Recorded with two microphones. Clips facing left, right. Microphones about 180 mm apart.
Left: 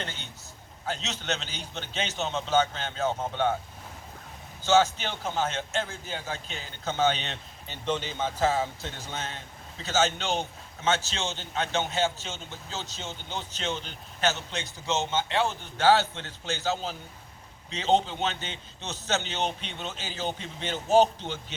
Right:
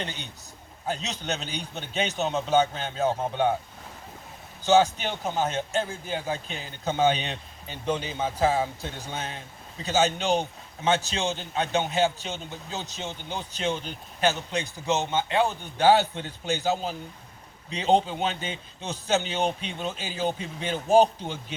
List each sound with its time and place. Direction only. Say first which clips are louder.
0.0 s a man's voice: right 3 dB; 15° right (ahead or behind)
4.6 s a man's voice: right 2 dB; 15° right (ahead or behind)